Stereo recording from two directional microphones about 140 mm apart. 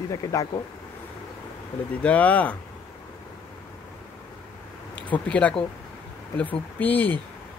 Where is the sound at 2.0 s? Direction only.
10° left (ahead or behind).